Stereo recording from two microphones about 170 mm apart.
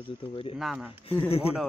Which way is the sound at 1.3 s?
35° left (ahead or behind).